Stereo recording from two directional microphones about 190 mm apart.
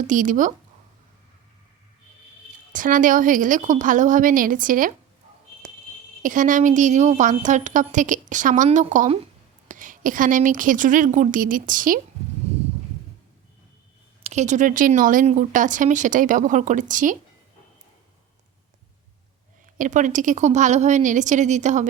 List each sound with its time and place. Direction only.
0.1 s speech: 45° right (ahead or behind)
2.7 s speech: 45° right (ahead or behind)
6.2 s speech: 45° right (ahead or behind)
14.3 s speech: 40° right (ahead or behind)
19.8 s speech: 40° right (ahead or behind)